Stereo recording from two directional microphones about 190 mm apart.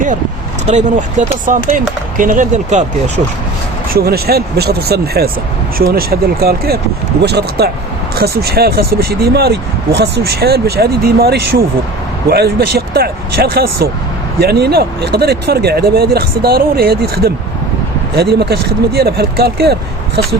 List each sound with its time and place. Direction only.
0.7 s speech: 40° right (ahead or behind)
3.9 s speech: 55° right (ahead or behind)